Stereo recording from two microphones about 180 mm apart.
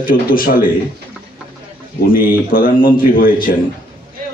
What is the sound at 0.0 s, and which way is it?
Speech, 50° left (ahead or behind).